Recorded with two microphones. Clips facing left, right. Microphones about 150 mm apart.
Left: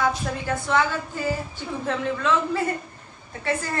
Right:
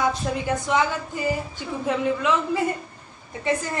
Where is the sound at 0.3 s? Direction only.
15° right (ahead or behind).